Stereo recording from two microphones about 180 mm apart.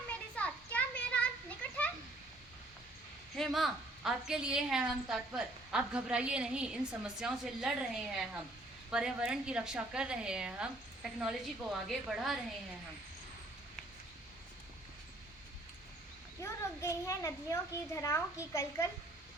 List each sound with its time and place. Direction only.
0.3 s children playing: 5° left (ahead or behind)
3.3 s a woman's voice: centre (ahead or behind)
16.4 s a child's voice: 15° left (ahead or behind)